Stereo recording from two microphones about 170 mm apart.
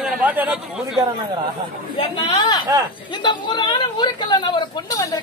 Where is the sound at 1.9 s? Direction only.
30° left (ahead or behind).